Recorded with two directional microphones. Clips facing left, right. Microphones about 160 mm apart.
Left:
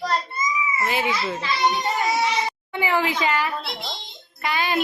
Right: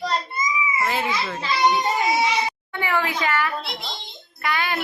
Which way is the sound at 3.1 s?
20° left (ahead or behind).